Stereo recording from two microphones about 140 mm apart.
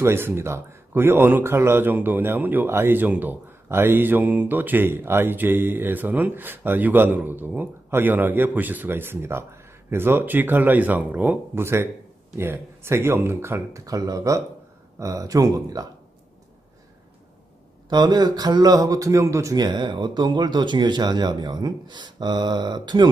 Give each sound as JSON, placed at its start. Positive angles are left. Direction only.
{"t": 0.0, "sound": "speech", "side_deg": -15}
{"t": 17.8, "sound": "speech", "side_deg": -30}